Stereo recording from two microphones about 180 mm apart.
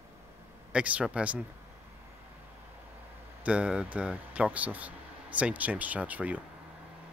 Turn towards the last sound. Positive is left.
turn(degrees=-10)  # may be behind; listen again after turning